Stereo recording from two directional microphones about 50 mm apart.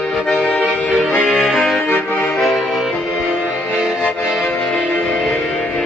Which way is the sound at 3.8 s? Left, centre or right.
Centre.